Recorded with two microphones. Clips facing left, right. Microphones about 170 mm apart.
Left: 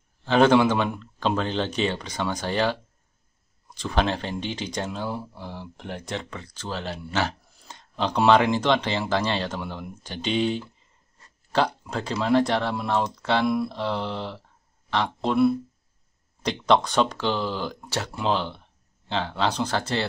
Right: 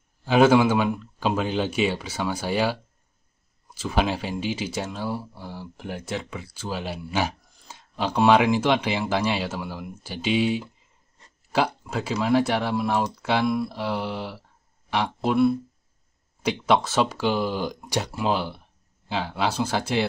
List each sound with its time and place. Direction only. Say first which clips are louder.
0.2 s speech: right 1 dB; 10° right (ahead or behind)
11.8 s speech: right 1 dB; 5° right (ahead or behind)
16.4 s speech: even; 5° right (ahead or behind)